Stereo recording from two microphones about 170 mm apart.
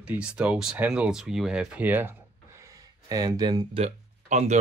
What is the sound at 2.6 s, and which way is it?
Speech, 20° right (ahead or behind).